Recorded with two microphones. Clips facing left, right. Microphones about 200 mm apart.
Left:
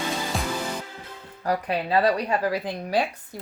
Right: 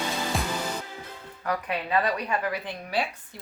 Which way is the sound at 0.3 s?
Centre (ahead or behind).